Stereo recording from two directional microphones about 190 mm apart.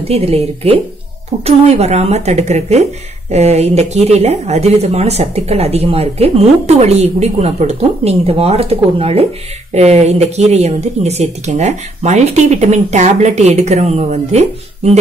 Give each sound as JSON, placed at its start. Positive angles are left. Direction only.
{"t": 0.1, "sound": "speech", "side_deg": -30}